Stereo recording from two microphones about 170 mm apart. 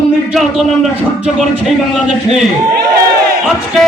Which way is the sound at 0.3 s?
Centre (ahead or behind).